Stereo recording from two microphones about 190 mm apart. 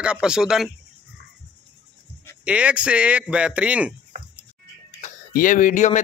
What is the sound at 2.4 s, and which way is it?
Speech, 5° right (ahead or behind).